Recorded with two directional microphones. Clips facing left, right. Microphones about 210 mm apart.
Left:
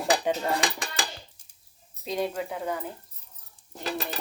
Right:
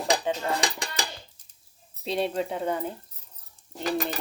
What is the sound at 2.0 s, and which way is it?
Speech, 30° right (ahead or behind).